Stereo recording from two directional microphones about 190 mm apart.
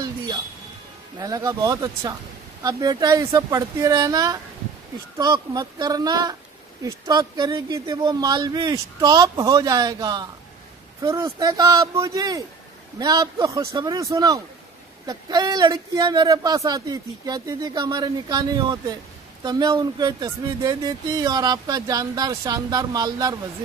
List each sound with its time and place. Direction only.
0.0 s music: 20° right (ahead or behind)
1.1 s speech: 20° right (ahead or behind)